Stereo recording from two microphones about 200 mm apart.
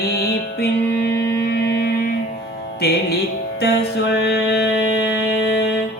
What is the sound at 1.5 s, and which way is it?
Music, 55° left (ahead or behind).